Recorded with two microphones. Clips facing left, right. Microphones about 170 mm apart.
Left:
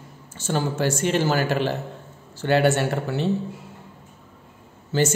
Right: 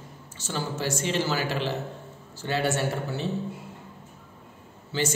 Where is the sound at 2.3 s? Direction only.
65° left (ahead or behind).